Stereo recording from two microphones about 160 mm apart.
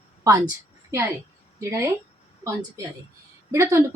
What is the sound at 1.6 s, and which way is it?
Speech, 20° right (ahead or behind).